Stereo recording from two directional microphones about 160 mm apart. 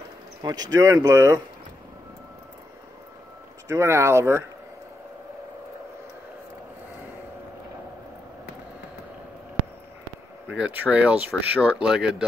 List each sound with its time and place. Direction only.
0.4 s speech: 25° right (ahead or behind)
3.6 s speech: 15° right (ahead or behind)
10.6 s speech: 10° right (ahead or behind)